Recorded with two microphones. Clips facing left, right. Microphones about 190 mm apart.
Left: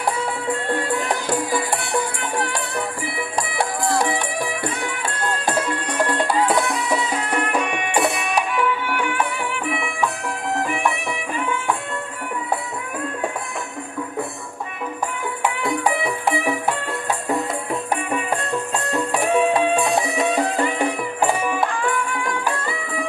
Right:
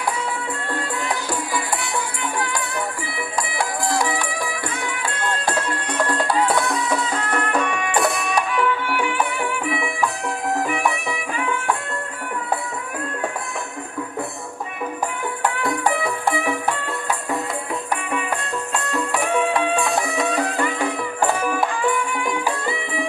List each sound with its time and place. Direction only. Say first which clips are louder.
7.2 s music: even; 15° left (ahead or behind)
18.9 s music: left 2 dB; 25° left (ahead or behind)
21.4 s music: even; centre (ahead or behind)